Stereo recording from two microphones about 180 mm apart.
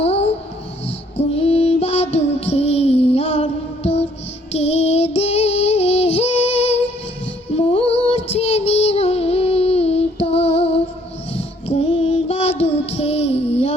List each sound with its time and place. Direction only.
0.0 s babbling: 35° left (ahead or behind)
0.9 s music: 35° left (ahead or behind)
4.5 s child singing: 35° left (ahead or behind)